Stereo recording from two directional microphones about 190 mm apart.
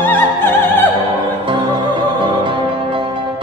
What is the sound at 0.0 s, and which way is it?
Music, 10° left (ahead or behind).